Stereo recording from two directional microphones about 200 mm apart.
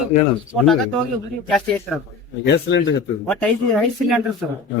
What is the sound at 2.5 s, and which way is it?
Speech, 60° left (ahead or behind).